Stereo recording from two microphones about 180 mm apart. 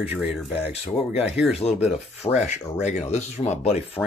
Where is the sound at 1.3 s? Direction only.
5° right (ahead or behind).